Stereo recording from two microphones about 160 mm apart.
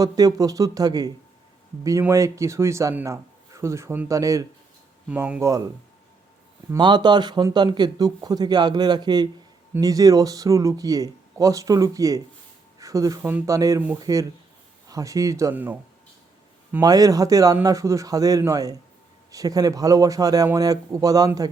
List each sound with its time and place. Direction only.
0.0 s a man's voice: 20° right (ahead or behind)
5.0 s speech: 10° right (ahead or behind)
6.7 s a man's voice: 30° right (ahead or behind); by 15.8 s 10° right (ahead or behind)
16.8 s a man's voice: 20° right (ahead or behind)